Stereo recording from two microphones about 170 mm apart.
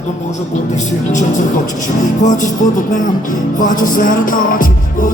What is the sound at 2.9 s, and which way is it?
Music, 50° left (ahead or behind).